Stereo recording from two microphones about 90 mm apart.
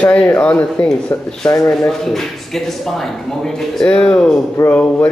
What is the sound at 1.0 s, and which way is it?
Speech, 30° left (ahead or behind).